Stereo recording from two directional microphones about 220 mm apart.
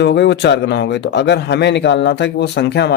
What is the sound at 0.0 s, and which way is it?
Speech, 50° left (ahead or behind).